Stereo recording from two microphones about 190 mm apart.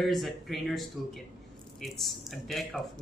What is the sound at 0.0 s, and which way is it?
Speech, centre (ahead or behind).